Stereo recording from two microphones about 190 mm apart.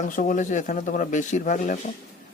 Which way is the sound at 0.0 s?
40° left (ahead or behind).